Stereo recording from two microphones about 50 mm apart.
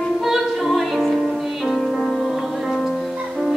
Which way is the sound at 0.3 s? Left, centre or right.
Centre.